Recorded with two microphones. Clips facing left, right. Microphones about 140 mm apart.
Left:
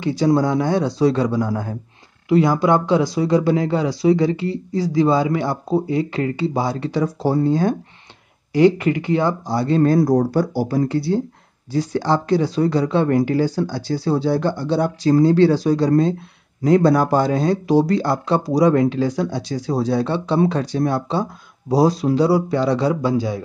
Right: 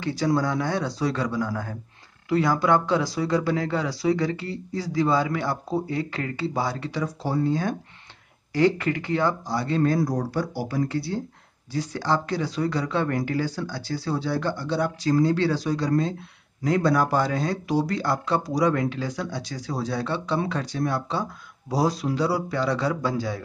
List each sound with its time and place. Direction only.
0.0 s speech: 20° left (ahead or behind)
6.9 s speech: 35° left (ahead or behind)
8.5 s speech: 15° left (ahead or behind); by 9.9 s 35° left (ahead or behind)
9.9 s speech: 50° left (ahead or behind)
10.5 s speech: 35° left (ahead or behind); by 23.4 s 20° left (ahead or behind)